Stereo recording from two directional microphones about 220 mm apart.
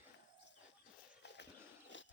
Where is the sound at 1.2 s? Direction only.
50° left (ahead or behind).